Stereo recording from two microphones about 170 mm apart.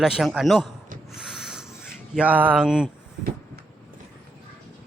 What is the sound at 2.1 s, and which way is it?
Speech, 10° right (ahead or behind).